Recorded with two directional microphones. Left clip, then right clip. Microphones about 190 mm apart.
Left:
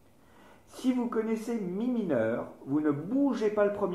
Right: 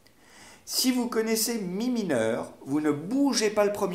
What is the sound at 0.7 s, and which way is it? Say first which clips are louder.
Speech: right 4 dB; 35° right (ahead or behind).